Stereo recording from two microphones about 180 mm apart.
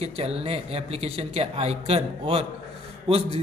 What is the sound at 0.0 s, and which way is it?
A man's voice, 35° right (ahead or behind).